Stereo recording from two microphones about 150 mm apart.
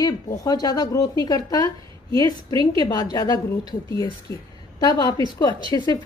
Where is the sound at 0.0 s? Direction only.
25° left (ahead or behind).